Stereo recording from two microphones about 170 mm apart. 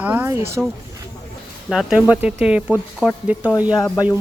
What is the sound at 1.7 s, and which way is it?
Speech, 5° right (ahead or behind).